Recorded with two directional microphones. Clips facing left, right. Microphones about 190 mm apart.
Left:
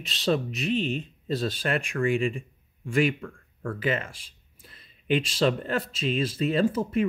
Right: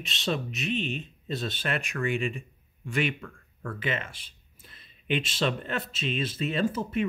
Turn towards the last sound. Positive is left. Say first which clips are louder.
# left 4 dB
turn(degrees=35)  # may be behind; listen again after turning